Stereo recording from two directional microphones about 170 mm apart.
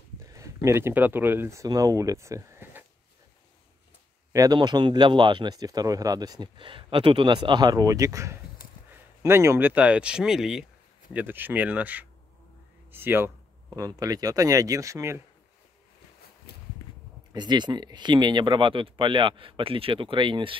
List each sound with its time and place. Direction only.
0.2 s speech: 20° right (ahead or behind)
4.3 s speech: 20° right (ahead or behind)
17.3 s speech: 25° right (ahead or behind)